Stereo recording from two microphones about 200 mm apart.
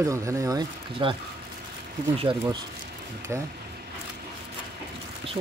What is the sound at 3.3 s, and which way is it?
Speech, 15° right (ahead or behind).